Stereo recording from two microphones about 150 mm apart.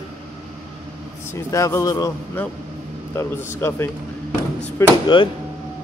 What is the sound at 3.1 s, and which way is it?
Speech, 15° left (ahead or behind).